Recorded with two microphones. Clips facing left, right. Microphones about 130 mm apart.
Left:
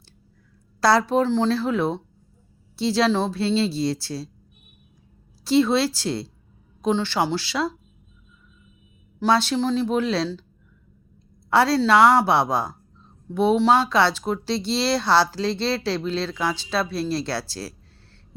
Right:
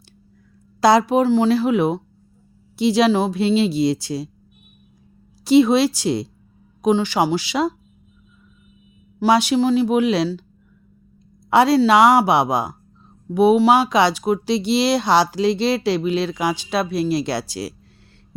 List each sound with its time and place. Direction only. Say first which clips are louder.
0.8 s speech: right 4 dB; 15° right (ahead or behind)
5.5 s speech: right 5 dB; 15° right (ahead or behind)
9.2 s speech: right 4 dB; 15° right (ahead or behind)
11.5 s speech: right 4 dB; 15° right (ahead or behind)